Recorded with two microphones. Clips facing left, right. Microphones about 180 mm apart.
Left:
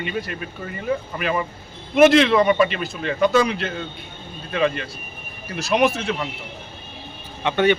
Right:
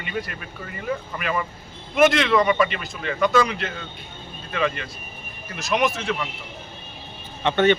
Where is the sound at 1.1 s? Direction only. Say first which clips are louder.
Left 3 dB; 30° left (ahead or behind).